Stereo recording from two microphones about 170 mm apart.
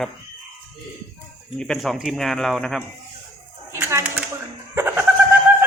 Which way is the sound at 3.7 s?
15° right (ahead or behind).